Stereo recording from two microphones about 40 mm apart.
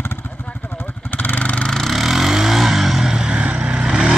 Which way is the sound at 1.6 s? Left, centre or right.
Centre.